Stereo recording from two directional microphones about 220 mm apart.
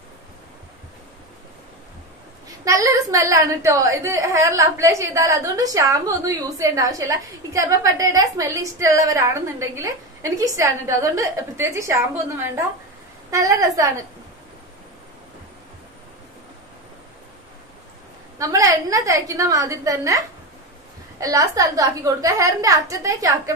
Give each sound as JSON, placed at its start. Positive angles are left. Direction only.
{"t": 2.4, "sound": "a woman's voice", "side_deg": -15}
{"t": 18.4, "sound": "a woman's voice", "side_deg": -15}